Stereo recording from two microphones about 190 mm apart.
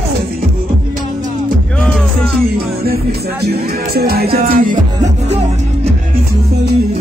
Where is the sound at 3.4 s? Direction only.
55° right (ahead or behind).